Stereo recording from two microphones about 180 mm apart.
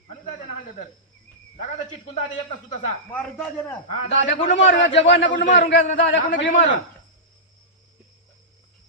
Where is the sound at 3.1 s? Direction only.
10° left (ahead or behind).